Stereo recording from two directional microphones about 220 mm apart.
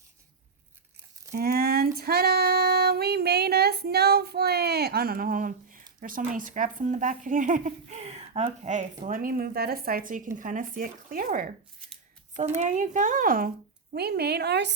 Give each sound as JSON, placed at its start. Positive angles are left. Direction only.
{"t": 1.3, "sound": "a sound", "side_deg": -45}
{"t": 2.0, "sound": "female singing", "side_deg": -45}
{"t": 6.0, "sound": "a woman's voice", "side_deg": -40}